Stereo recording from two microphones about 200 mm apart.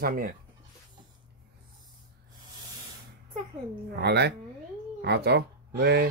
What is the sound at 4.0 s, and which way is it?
Speech, 55° right (ahead or behind).